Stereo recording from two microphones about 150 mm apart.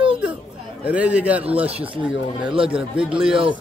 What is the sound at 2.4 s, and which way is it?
Speech, 35° right (ahead or behind).